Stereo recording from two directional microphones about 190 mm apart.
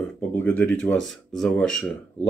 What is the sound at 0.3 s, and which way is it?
Speech, 10° left (ahead or behind).